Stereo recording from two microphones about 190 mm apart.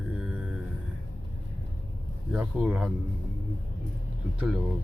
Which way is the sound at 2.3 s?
5° right (ahead or behind).